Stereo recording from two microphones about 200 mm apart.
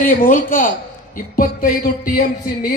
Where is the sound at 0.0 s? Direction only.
45° left (ahead or behind).